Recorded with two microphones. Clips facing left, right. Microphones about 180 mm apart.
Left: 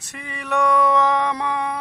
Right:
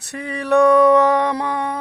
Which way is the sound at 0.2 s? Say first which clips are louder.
Right 8 dB; 40° right (ahead or behind).